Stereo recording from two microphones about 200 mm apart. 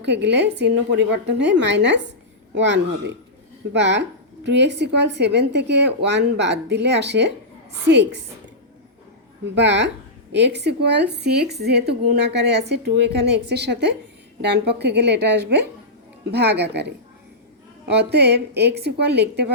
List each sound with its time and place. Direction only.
0.0 s a woman's voice: 60° right (ahead or behind)
9.6 s a woman's voice: 60° right (ahead or behind)